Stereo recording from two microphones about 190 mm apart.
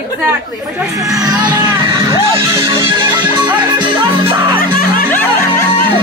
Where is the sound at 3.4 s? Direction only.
25° right (ahead or behind).